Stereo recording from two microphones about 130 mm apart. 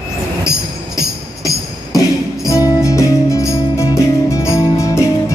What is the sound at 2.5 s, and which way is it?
Music, 25° left (ahead or behind).